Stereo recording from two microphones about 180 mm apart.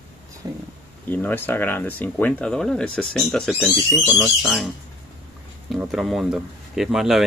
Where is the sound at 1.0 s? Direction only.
10° left (ahead or behind).